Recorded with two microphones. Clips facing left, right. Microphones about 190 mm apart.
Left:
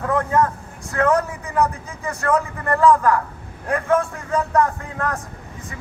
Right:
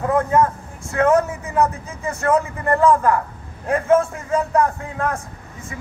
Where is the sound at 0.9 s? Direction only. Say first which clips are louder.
Right 3 dB; 20° right (ahead or behind).